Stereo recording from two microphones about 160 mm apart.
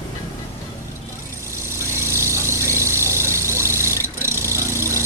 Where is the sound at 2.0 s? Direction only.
15° right (ahead or behind).